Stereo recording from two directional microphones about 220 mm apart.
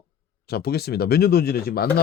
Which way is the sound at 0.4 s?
45° left (ahead or behind).